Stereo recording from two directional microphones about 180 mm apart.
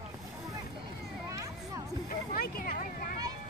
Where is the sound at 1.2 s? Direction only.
15° right (ahead or behind).